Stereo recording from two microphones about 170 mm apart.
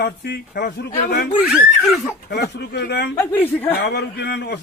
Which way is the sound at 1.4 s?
5° right (ahead or behind).